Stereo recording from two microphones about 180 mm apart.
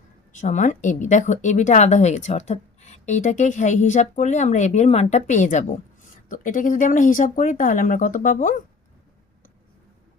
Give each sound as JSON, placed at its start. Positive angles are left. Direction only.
{"t": 0.3, "sound": "speech", "side_deg": 40}